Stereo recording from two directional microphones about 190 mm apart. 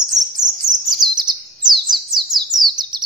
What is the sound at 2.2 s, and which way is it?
Bird, 20° right (ahead or behind).